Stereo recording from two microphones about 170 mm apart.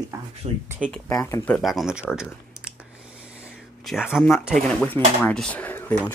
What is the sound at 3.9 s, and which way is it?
Speech, 5° right (ahead or behind).